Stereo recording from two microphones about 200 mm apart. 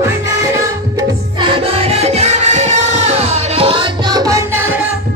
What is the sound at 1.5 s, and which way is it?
Music, 30° right (ahead or behind).